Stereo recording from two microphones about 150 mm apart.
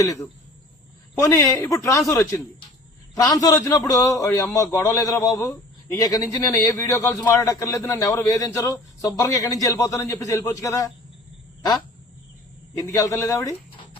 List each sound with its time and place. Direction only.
0.0 s a man's voice: 25° left (ahead or behind)
12.7 s a man's voice: 20° left (ahead or behind)